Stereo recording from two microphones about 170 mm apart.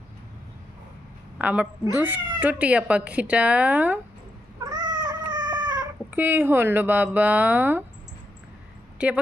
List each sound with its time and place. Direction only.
1.4 s a woman's voice: 10° right (ahead or behind)
4.6 s cat: 25° right (ahead or behind)
6.1 s speech: 10° right (ahead or behind)
9.0 s a woman's voice: 5° right (ahead or behind)